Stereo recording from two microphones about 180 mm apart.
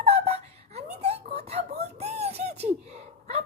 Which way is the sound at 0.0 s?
35° right (ahead or behind).